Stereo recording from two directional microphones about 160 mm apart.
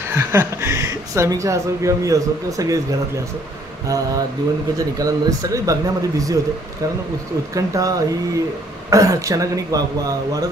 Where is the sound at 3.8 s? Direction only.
20° right (ahead or behind).